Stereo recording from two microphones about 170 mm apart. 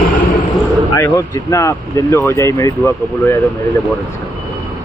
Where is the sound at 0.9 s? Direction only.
20° left (ahead or behind).